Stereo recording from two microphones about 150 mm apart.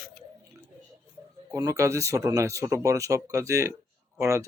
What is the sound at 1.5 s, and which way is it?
Speech, 20° right (ahead or behind).